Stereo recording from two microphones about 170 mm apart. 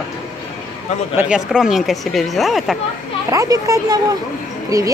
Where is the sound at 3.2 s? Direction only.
20° right (ahead or behind).